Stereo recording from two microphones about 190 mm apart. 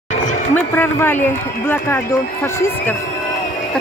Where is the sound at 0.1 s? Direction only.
40° left (ahead or behind).